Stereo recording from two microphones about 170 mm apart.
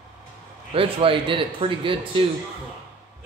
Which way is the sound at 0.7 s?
35° right (ahead or behind).